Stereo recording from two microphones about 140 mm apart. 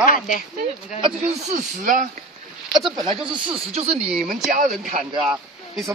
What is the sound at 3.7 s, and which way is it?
Speech, 45° right (ahead or behind).